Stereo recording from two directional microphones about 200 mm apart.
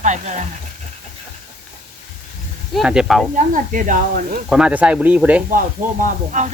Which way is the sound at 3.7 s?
40° right (ahead or behind).